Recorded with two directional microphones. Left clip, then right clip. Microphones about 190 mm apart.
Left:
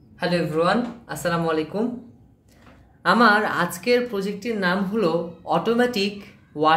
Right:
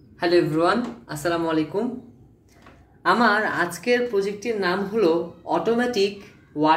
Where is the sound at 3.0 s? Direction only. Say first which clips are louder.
Left 2 dB; 35° left (ahead or behind).